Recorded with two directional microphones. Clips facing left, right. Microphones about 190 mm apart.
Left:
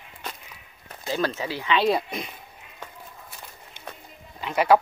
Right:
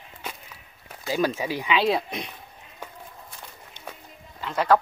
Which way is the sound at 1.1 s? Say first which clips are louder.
Right 2 dB; 10° right (ahead or behind).